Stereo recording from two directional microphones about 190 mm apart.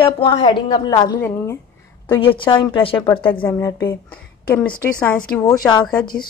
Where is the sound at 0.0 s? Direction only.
25° left (ahead or behind).